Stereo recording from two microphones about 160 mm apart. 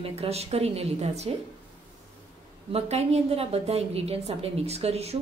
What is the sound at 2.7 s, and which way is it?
A woman's voice, 40° right (ahead or behind).